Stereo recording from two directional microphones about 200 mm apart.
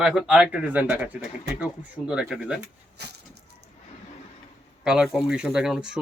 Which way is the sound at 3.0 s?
55° right (ahead or behind).